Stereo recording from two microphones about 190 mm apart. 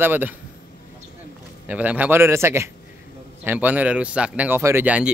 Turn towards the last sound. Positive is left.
turn(degrees=-10)  # may be behind; listen again after turning